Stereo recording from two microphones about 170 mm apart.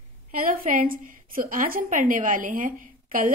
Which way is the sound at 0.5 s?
55° right (ahead or behind).